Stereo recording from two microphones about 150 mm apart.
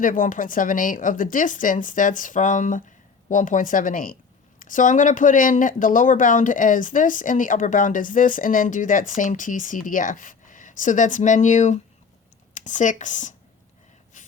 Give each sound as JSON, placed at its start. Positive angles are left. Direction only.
{"t": 0.0, "sound": "speech", "side_deg": 60}